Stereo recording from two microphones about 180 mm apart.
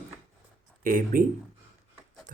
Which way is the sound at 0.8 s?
50° right (ahead or behind).